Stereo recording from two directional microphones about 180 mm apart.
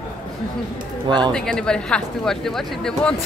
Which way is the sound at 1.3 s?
5° left (ahead or behind).